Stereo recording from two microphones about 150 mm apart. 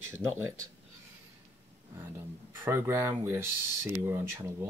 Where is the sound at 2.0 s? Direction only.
15° right (ahead or behind).